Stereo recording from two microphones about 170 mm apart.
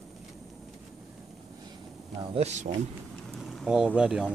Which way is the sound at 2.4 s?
40° right (ahead or behind).